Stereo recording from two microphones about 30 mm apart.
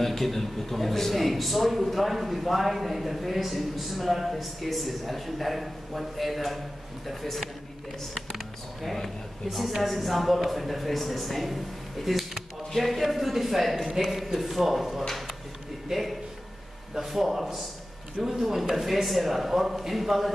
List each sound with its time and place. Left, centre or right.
0.0 s a man's voice: centre
9.8 s a man's voice: centre